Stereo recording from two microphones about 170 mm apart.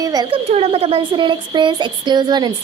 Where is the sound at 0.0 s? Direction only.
25° right (ahead or behind).